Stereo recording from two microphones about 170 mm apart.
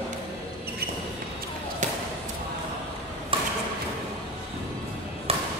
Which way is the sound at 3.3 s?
30° right (ahead or behind).